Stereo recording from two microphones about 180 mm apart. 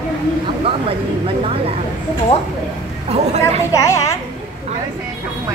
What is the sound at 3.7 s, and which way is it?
Speech, 15° left (ahead or behind).